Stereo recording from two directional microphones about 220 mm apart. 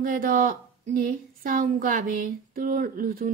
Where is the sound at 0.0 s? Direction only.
40° right (ahead or behind).